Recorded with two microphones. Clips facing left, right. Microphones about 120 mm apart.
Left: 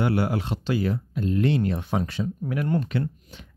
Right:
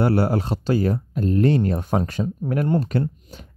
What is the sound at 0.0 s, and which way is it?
Speech, 40° right (ahead or behind).